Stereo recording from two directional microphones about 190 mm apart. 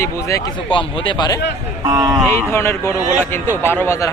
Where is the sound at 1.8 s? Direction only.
20° right (ahead or behind).